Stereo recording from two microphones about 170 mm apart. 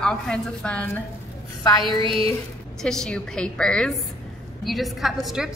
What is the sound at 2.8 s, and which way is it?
A woman's voice, 5° left (ahead or behind).